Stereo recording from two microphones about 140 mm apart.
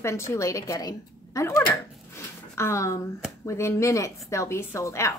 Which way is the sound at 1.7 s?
20° left (ahead or behind).